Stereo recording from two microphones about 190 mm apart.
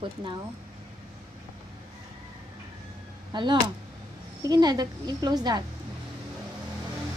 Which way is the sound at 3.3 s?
25° right (ahead or behind).